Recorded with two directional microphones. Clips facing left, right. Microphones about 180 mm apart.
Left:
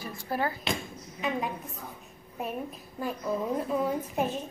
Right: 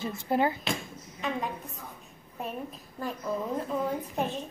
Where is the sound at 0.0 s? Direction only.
25° right (ahead or behind).